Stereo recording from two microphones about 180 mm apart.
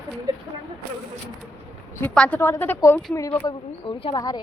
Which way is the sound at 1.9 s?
10° left (ahead or behind).